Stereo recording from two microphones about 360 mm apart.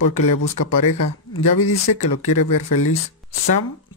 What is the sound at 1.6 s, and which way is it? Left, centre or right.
Speech, left.